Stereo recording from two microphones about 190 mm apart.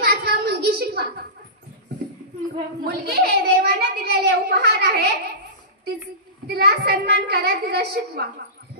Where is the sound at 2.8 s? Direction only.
55° right (ahead or behind).